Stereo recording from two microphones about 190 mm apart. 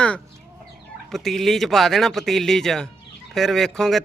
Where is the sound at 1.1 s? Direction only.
Centre (ahead or behind).